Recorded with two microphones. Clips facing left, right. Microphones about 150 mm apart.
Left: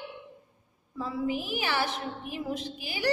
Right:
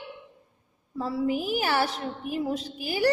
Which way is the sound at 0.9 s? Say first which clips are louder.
Right 4 dB; 35° right (ahead or behind).